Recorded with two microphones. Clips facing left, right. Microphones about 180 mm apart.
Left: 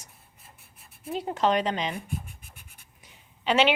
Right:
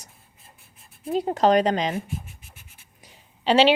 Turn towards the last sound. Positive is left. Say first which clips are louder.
# right 5 dB
turn(degrees=-30)  # may be behind; listen again after turning